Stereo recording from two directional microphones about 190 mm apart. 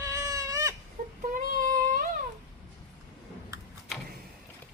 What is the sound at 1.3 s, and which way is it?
Child singing, 45° right (ahead or behind).